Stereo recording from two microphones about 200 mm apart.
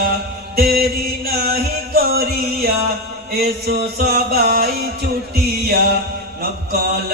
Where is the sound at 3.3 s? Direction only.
50° right (ahead or behind).